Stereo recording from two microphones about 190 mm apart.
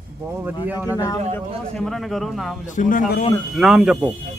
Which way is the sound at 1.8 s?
Centre (ahead or behind).